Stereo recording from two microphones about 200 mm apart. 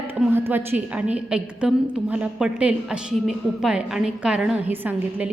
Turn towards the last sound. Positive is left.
turn(degrees=-10)  # may be behind; listen again after turning